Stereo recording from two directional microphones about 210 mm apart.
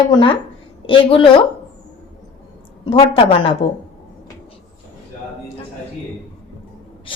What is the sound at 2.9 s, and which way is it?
Speech, 25° left (ahead or behind).